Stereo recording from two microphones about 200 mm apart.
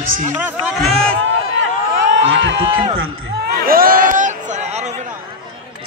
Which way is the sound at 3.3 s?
50° right (ahead or behind).